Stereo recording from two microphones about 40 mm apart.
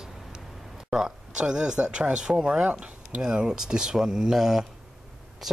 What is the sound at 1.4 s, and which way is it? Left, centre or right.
Speech, right.